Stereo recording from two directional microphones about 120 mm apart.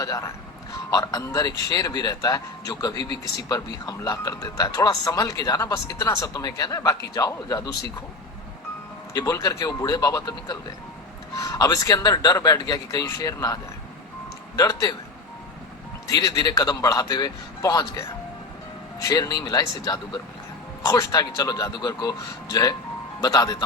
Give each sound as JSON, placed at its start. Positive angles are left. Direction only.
{"t": 0.0, "sound": "speech", "side_deg": 25}
{"t": 9.1, "sound": "speech", "side_deg": 30}
{"t": 16.0, "sound": "speech", "side_deg": 30}
{"t": 19.0, "sound": "speech", "side_deg": 35}
{"t": 23.2, "sound": "speech", "side_deg": 30}